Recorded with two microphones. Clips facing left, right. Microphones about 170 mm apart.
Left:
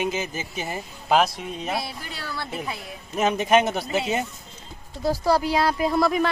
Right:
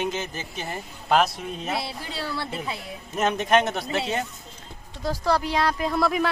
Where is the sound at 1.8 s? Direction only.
25° right (ahead or behind).